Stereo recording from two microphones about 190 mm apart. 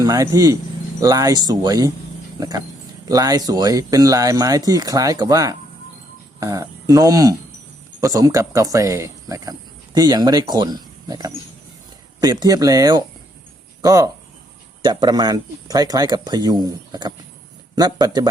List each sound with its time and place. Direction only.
0.0 s speech: 20° right (ahead or behind)